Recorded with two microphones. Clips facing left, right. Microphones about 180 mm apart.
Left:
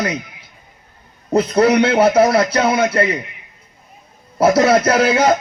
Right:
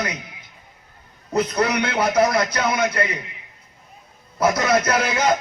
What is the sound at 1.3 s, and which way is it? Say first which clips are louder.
Speech: left 7 dB; 30° left (ahead or behind).